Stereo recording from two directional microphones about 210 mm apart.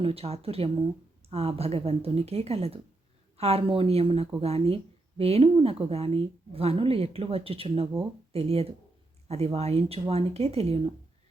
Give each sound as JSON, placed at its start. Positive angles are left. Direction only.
{"t": 0.0, "sound": "a woman's voice", "side_deg": -30}